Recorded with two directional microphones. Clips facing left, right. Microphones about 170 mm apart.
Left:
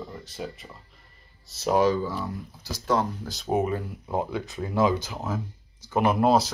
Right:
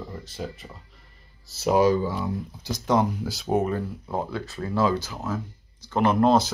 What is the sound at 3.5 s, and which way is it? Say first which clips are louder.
Speech: right 1 dB; 5° left (ahead or behind).